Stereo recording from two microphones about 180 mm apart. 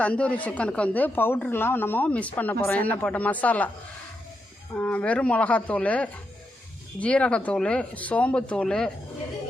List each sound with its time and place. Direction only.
0.0 s speech: 5° left (ahead or behind)
4.7 s speech: 5° left (ahead or behind)